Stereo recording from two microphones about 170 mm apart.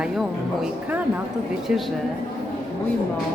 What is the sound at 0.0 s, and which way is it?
Speech, 5° right (ahead or behind).